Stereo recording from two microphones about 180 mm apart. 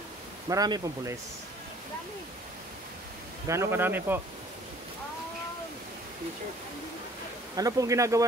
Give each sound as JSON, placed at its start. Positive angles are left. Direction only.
{"t": 0.5, "sound": "speech", "side_deg": -20}
{"t": 3.4, "sound": "speech", "side_deg": -15}
{"t": 7.5, "sound": "speech", "side_deg": -20}